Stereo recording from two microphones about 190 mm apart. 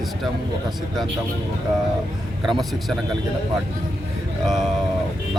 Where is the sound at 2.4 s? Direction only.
Centre (ahead or behind).